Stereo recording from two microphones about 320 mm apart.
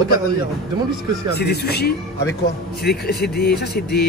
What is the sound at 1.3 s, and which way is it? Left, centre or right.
Speech, left.